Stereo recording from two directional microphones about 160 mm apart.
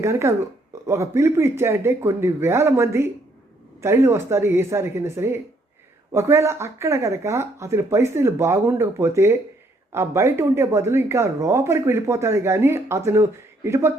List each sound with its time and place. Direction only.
0.0 s speech: 20° right (ahead or behind)